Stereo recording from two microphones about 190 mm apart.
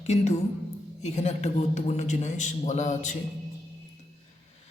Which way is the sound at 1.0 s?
35° left (ahead or behind).